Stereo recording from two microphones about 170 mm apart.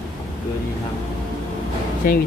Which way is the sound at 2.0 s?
55° left (ahead or behind).